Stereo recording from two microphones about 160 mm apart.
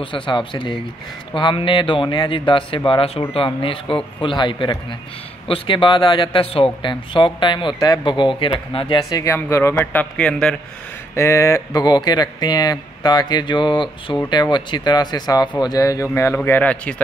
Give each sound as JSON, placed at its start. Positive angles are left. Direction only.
{"t": 0.0, "sound": "a man's voice", "side_deg": 30}
{"t": 11.1, "sound": "speech", "side_deg": 20}